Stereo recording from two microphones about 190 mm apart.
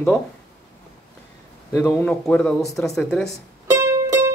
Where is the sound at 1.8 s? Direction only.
5° left (ahead or behind).